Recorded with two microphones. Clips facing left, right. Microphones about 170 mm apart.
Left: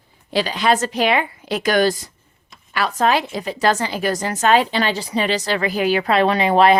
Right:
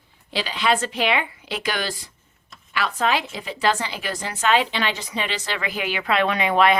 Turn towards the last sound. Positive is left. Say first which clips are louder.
# left 5 dB
turn(degrees=35)  # may be behind; listen again after turning